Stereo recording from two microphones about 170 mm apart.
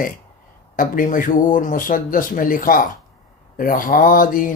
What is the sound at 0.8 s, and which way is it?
Speech, 50° left (ahead or behind).